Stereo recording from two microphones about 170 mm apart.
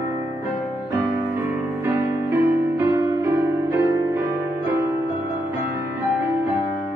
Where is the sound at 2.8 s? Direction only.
15° right (ahead or behind).